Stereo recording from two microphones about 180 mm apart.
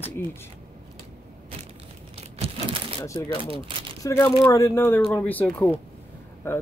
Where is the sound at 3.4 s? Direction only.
30° right (ahead or behind).